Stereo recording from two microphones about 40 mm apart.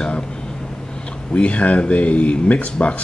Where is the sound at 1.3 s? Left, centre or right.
Left.